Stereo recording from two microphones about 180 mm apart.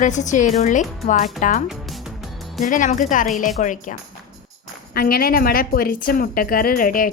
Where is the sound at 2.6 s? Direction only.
45° left (ahead or behind).